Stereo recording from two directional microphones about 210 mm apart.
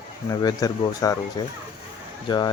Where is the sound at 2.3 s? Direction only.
20° left (ahead or behind).